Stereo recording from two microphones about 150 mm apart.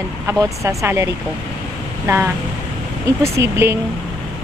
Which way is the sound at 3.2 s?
20° right (ahead or behind).